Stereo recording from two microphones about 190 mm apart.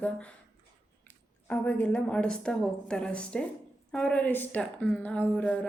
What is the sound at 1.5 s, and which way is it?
A woman's voice, 10° left (ahead or behind).